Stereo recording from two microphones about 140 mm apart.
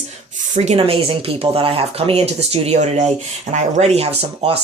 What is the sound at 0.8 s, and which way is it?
Speech, 40° right (ahead or behind).